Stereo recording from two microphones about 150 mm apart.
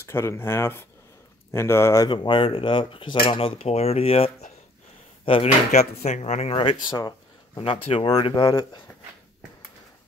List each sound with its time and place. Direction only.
0.0 s speech: 15° left (ahead or behind)
2.0 s speech: 30° left (ahead or behind)
5.7 s speech: 50° left (ahead or behind); by 8.8 s 30° left (ahead or behind)